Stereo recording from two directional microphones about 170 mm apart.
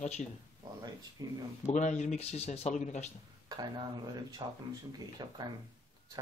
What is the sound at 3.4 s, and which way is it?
Speech, 25° right (ahead or behind).